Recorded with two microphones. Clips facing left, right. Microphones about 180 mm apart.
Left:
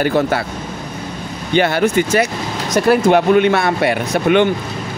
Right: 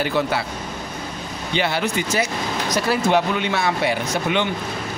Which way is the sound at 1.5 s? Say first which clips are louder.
Left 8 dB; 50° left (ahead or behind).